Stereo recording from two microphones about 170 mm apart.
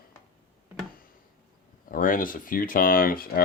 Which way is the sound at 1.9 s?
55° left (ahead or behind).